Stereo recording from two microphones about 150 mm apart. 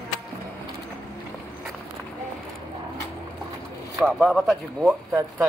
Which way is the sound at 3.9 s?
Centre (ahead or behind).